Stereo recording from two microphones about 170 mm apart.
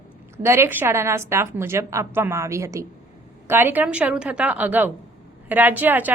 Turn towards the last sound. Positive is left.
turn(degrees=-10)  # may be behind; listen again after turning